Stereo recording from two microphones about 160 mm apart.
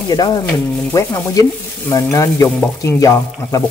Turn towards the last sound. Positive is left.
turn(degrees=20)  # may be behind; listen again after turning